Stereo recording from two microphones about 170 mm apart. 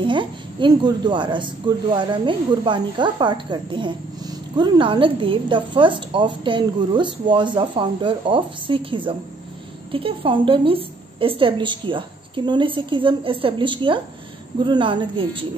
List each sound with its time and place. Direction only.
0.0 s a woman's voice: 30° right (ahead or behind)